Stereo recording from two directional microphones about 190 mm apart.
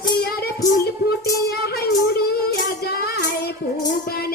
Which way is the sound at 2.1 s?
55° left (ahead or behind).